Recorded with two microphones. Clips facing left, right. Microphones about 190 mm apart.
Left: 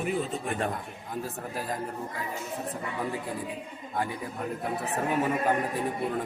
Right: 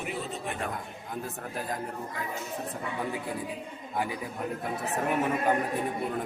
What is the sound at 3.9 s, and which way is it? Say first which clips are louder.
Speech: even; centre (ahead or behind).